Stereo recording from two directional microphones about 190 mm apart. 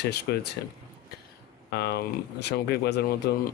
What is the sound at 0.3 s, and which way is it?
Speech, 60° left (ahead or behind).